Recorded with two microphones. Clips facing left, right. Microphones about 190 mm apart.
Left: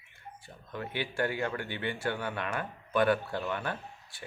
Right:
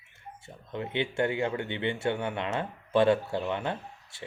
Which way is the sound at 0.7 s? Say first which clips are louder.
Right 4 dB; 20° right (ahead or behind).